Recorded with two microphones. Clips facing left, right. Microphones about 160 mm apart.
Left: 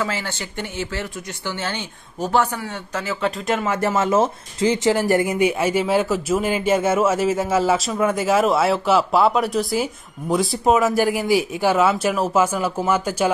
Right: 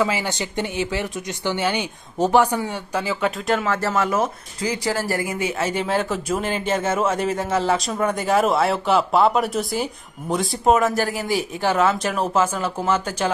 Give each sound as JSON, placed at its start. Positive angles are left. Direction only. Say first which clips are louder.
{"t": 0.0, "sound": "speech", "louder": "right 3 dB", "side_deg": -15}
{"t": 3.3, "sound": "speech", "louder": "left 1 dB", "side_deg": 0}
{"t": 3.7, "sound": "speech", "louder": "left 3 dB", "side_deg": 20}
{"t": 11.0, "sound": "speech", "louder": "left 4 dB", "side_deg": 10}